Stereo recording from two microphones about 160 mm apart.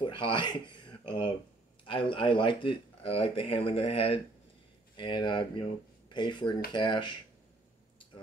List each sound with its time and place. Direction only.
0.0 s speech: 30° left (ahead or behind)